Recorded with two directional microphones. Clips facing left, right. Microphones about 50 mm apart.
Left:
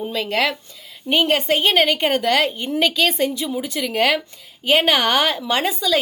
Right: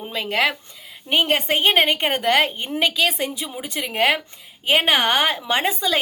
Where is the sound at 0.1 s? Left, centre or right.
Centre.